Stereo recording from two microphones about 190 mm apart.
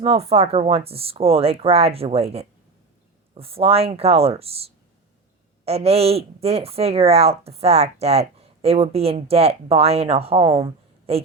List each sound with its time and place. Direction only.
0.0 s speech: 30° right (ahead or behind)